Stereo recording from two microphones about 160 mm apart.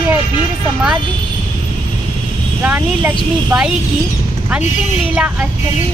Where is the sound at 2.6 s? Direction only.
10° right (ahead or behind).